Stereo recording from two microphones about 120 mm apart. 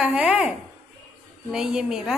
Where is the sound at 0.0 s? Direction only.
10° right (ahead or behind).